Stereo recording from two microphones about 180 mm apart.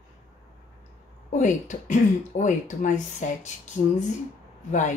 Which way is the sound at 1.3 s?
45° left (ahead or behind).